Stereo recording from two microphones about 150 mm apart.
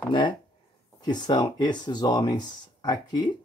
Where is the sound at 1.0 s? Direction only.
30° left (ahead or behind).